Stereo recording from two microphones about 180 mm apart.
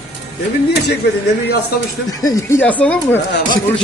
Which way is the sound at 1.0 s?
65° left (ahead or behind).